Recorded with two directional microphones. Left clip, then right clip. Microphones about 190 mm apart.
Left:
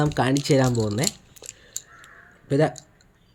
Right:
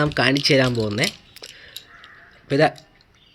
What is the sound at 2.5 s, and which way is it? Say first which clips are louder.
Speech: right 4 dB; 15° left (ahead or behind).